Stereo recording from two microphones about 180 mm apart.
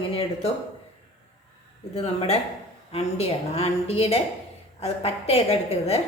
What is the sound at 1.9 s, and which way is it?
Speech, 35° left (ahead or behind).